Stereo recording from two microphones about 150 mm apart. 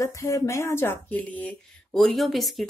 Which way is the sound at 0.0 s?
20° left (ahead or behind).